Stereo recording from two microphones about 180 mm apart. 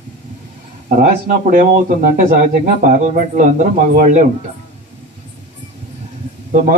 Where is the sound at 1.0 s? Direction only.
45° right (ahead or behind).